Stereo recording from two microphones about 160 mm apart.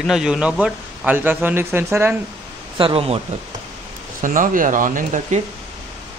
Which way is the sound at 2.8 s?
35° right (ahead or behind).